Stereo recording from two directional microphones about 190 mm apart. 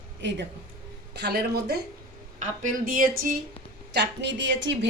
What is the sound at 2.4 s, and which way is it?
Speech, 45° right (ahead or behind).